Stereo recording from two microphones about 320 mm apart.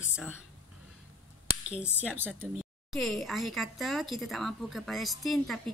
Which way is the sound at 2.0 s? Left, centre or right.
Centre.